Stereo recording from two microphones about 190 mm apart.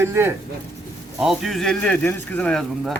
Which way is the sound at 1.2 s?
Centre (ahead or behind).